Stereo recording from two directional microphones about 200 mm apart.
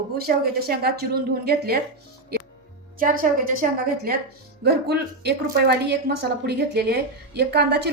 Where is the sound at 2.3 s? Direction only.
50° right (ahead or behind).